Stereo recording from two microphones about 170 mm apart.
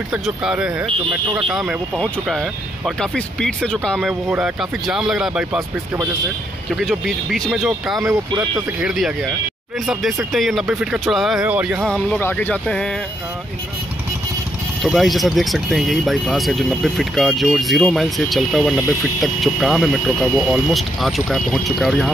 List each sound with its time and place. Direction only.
0.1 s speech: 5° right (ahead or behind)
6.7 s speech: centre (ahead or behind)
8.0 s speech: 20° right (ahead or behind)
8.8 s speech: centre (ahead or behind)
11.9 s speech: 10° left (ahead or behind)
14.8 s speech: centre (ahead or behind)